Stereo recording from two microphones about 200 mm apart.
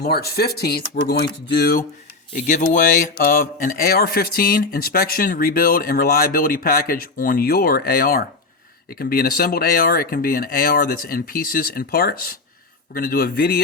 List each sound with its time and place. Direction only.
0.0 s speech: 50° left (ahead or behind)
2.5 s speech: 40° left (ahead or behind)